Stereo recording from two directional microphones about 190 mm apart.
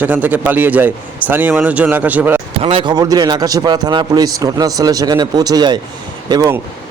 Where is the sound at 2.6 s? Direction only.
30° right (ahead or behind).